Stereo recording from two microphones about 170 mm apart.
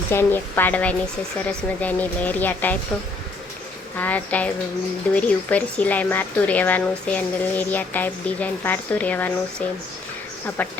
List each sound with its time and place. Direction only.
0.1 s speech: 15° left (ahead or behind)
3.9 s speech: 10° left (ahead or behind)